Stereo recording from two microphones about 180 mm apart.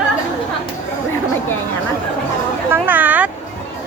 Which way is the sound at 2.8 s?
10° right (ahead or behind).